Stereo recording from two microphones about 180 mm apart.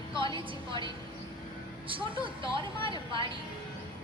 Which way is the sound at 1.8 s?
30° right (ahead or behind).